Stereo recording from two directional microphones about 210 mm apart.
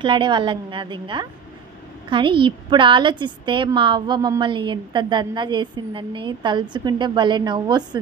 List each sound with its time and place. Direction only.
0.0 s a woman's voice: 20° right (ahead or behind)